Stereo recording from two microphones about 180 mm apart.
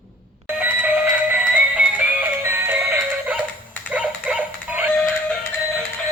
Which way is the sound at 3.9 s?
5° right (ahead or behind).